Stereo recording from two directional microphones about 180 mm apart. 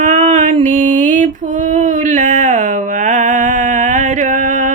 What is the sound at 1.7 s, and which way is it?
Music, 45° right (ahead or behind).